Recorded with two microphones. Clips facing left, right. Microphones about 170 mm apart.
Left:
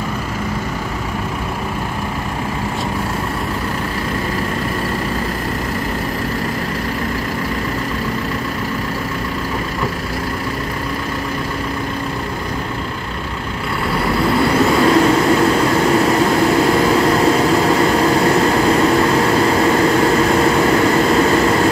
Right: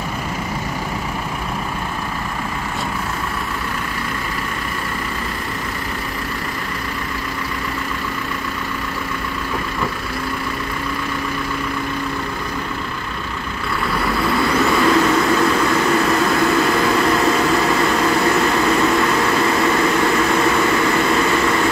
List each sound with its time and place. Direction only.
14.0 s vehicle: 30° left (ahead or behind)